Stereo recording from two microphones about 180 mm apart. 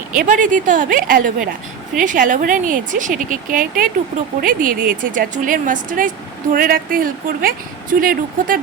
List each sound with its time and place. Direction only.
0.2 s speech: 45° right (ahead or behind)